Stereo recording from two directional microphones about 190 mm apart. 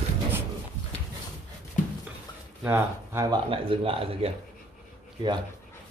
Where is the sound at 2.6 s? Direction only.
15° right (ahead or behind); by 4.3 s 30° right (ahead or behind).